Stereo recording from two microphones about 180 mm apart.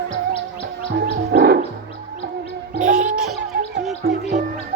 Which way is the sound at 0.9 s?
60° right (ahead or behind).